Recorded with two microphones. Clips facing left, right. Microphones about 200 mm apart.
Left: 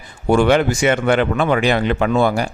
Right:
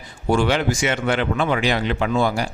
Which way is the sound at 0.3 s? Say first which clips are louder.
Left 5 dB; 55° left (ahead or behind).